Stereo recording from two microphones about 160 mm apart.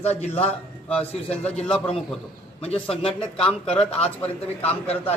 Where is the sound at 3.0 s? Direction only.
5° left (ahead or behind).